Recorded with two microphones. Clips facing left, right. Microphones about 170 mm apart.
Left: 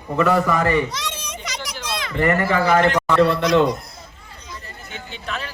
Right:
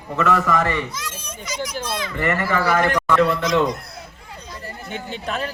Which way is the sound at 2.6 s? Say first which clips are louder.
Left 2 dB; 20° left (ahead or behind).